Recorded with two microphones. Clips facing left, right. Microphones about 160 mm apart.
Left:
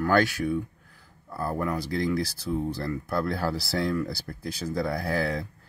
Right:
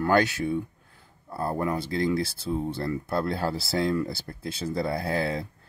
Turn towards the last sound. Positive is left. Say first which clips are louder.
# even
turn(degrees=-25)  # may be behind; listen again after turning